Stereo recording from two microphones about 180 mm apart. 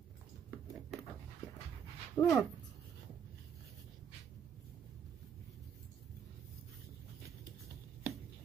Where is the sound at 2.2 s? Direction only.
15° left (ahead or behind).